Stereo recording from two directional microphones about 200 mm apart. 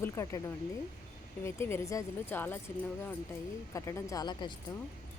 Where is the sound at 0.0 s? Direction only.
15° left (ahead or behind).